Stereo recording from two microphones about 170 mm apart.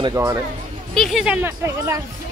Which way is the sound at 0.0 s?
20° right (ahead or behind).